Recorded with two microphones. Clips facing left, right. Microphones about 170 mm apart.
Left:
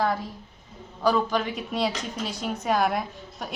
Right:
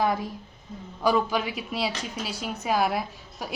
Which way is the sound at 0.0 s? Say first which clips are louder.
Right 1 dB; 15° right (ahead or behind).